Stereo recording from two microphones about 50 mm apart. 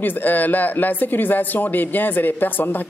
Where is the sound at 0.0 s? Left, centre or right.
Left.